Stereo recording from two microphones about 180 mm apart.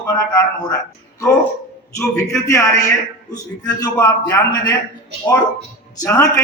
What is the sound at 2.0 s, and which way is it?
A man's voice, 15° left (ahead or behind).